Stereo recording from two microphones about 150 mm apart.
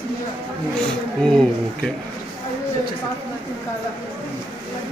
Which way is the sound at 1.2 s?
5° left (ahead or behind).